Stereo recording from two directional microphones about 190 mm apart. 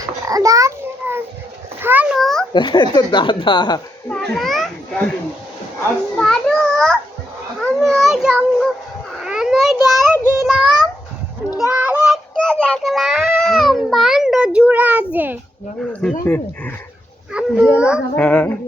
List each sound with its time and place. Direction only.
0.0 s babbling: 20° right (ahead or behind)
1.8 s a child's voice: 10° right (ahead or behind)
2.5 s speech: 25° left (ahead or behind)
4.1 s speech: centre (ahead or behind)
6.1 s a child's voice: centre (ahead or behind)
7.6 s a sound: centre (ahead or behind)
10.3 s child singing: centre (ahead or behind)
15.8 s a child's voice: 5° left (ahead or behind)
17.3 s a child's voice: 5° right (ahead or behind)
18.2 s speech: 10° left (ahead or behind)